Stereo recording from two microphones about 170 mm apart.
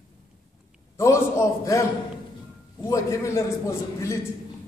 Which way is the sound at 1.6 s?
15° left (ahead or behind).